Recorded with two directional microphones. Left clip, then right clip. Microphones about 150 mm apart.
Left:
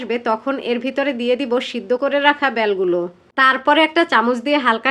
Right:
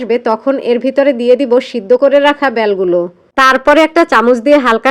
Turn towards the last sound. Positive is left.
turn(degrees=-35)  # may be behind; listen again after turning